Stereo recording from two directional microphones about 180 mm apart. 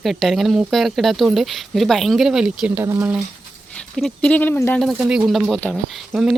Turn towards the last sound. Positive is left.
turn(degrees=-5)  # may be behind; listen again after turning